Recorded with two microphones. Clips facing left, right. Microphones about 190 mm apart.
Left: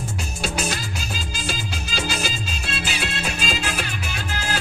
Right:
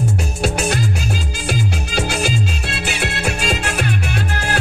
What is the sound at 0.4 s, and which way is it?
Music, 60° right (ahead or behind).